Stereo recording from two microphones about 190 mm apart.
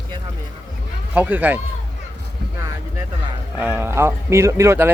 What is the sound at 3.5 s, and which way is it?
Speech, 10° right (ahead or behind).